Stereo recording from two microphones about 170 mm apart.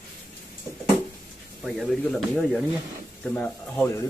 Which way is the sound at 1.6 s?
Centre (ahead or behind).